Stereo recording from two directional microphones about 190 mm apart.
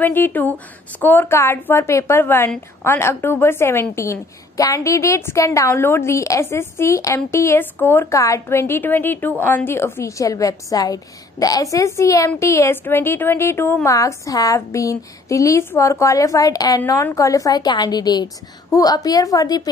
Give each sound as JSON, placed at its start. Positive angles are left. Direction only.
{"t": 0.0, "sound": "a woman's voice", "side_deg": 10}